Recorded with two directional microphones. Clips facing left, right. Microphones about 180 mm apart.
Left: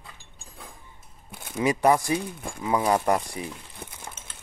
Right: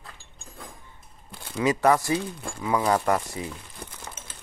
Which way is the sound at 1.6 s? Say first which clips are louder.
Even; 15° left (ahead or behind).